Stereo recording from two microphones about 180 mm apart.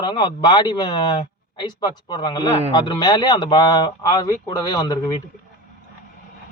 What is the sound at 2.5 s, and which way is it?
Speech, 35° right (ahead or behind).